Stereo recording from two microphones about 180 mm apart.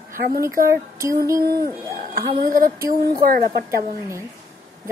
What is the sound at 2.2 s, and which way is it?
Speech, 50° right (ahead or behind).